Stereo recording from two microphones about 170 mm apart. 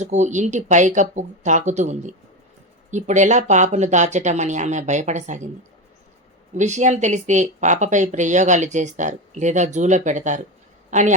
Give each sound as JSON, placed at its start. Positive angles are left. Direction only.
{"t": 0.0, "sound": "speech", "side_deg": -45}
{"t": 6.6, "sound": "speech", "side_deg": -45}